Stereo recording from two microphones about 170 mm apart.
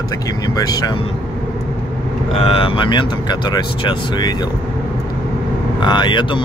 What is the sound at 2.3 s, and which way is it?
Speech, 35° left (ahead or behind).